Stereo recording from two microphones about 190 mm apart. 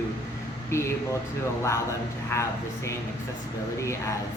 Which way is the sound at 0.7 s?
15° left (ahead or behind).